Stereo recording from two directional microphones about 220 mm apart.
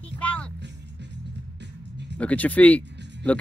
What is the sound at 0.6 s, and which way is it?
Music, 50° right (ahead or behind).